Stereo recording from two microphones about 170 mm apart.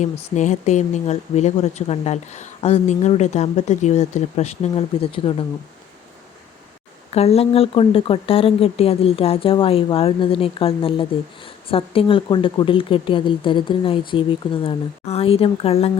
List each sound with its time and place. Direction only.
0.0 s speech: 45° left (ahead or behind)
7.1 s speech: 35° left (ahead or behind)